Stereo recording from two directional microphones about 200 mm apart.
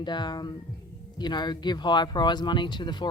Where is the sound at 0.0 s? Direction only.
20° left (ahead or behind).